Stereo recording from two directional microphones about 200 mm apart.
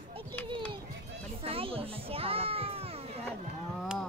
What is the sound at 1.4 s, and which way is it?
A child's voice, 30° right (ahead or behind).